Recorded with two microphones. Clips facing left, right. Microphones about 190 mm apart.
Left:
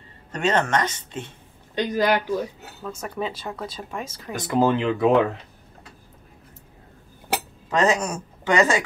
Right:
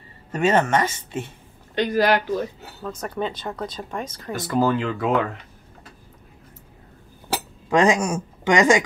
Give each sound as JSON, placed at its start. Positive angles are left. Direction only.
{"t": 0.3, "sound": "speech", "side_deg": -10}
{"t": 1.8, "sound": "speech", "side_deg": 15}
{"t": 4.5, "sound": "speech", "side_deg": 20}
{"t": 7.7, "sound": "speech", "side_deg": -15}